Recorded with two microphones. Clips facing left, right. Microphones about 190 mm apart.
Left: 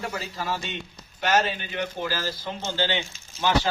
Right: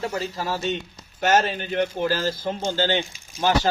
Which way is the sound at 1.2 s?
45° right (ahead or behind).